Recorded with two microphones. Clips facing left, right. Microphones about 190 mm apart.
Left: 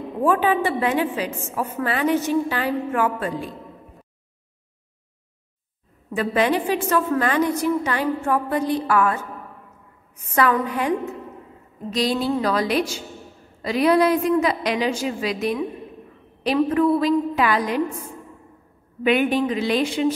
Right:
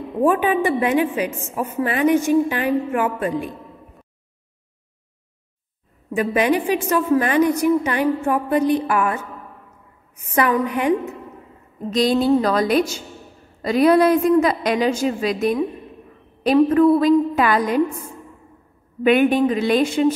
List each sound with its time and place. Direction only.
0.2 s a woman's voice: 15° right (ahead or behind)
6.1 s a woman's voice: 15° right (ahead or behind)
11.9 s a woman's voice: 45° right (ahead or behind)
19.0 s a woman's voice: 50° right (ahead or behind)